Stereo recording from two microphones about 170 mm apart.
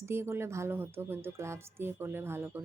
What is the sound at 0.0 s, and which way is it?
Speech, 15° right (ahead or behind).